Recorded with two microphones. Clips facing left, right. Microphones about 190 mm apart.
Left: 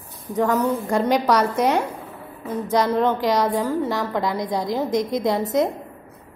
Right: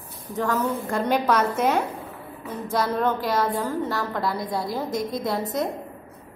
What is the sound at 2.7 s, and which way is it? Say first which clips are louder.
A woman's voice: left 4 dB; 15° left (ahead or behind).